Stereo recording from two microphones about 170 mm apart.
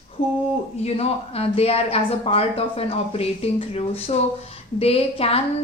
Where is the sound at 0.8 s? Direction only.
35° left (ahead or behind).